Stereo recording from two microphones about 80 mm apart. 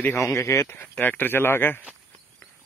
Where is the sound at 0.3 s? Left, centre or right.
Left.